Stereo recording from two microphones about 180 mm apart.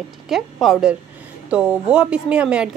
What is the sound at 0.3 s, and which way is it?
Speech, centre (ahead or behind).